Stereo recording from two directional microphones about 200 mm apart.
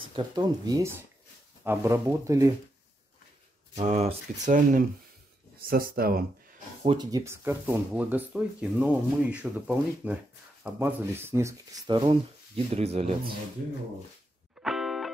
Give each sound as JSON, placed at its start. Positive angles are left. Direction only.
{"t": 0.1, "sound": "speech", "side_deg": -20}
{"t": 3.7, "sound": "speech", "side_deg": -35}
{"t": 6.8, "sound": "speech", "side_deg": -25}
{"t": 14.6, "sound": "music", "side_deg": 0}